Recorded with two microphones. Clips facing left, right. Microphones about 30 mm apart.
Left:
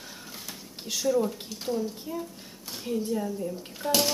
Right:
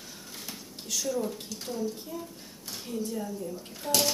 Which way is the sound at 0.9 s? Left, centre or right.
Centre.